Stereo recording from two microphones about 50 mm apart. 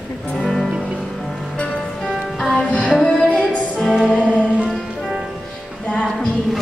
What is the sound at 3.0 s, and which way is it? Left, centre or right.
Music, centre.